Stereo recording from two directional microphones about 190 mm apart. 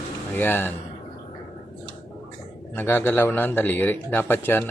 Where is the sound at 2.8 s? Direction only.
10° left (ahead or behind).